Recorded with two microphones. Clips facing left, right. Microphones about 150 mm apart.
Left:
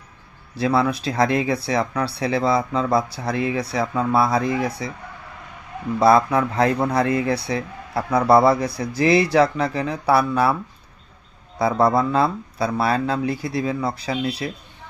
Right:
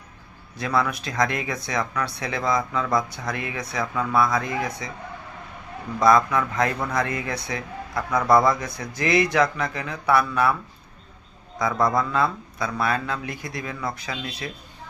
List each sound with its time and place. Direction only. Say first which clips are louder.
0.5 s speech: left 5 dB; 30° left (ahead or behind)
6.0 s speech: left 3 dB; 30° left (ahead or behind)
11.6 s speech: left 4 dB; 30° left (ahead or behind)